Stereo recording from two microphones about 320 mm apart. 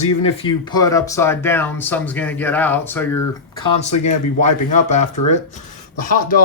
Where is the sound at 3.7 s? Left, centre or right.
Left.